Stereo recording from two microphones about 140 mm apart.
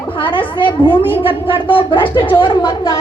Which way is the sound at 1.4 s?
35° left (ahead or behind).